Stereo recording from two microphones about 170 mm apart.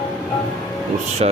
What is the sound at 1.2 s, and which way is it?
Speech, 40° right (ahead or behind).